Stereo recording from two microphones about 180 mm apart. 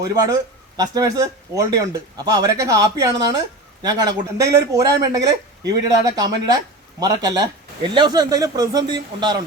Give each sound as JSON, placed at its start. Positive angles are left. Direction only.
{"t": 0.1, "sound": "speech", "side_deg": -20}